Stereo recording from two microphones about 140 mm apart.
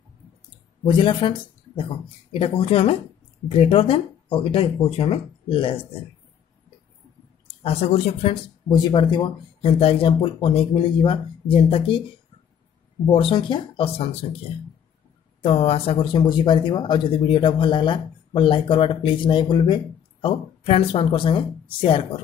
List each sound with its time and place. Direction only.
0.8 s speech: 35° left (ahead or behind)
7.6 s speech: 45° left (ahead or behind)
8.6 s speech: 30° left (ahead or behind)
13.1 s speech: 40° left (ahead or behind)
15.4 s speech: 45° left (ahead or behind)